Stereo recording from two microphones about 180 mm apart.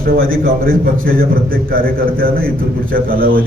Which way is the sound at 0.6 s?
50° right (ahead or behind).